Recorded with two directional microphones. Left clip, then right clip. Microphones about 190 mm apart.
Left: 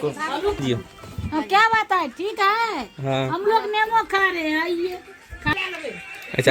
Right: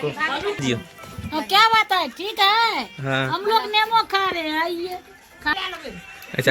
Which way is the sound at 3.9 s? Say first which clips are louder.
Even; 5° left (ahead or behind).